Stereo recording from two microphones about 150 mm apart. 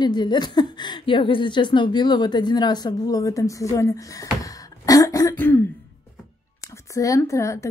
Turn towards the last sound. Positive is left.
turn(degrees=20)  # may be behind; listen again after turning